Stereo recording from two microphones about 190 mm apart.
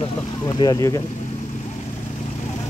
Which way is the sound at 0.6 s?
20° left (ahead or behind).